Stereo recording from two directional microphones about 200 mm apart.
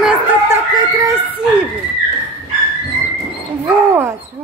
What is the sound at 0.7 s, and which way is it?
Speech, 15° right (ahead or behind).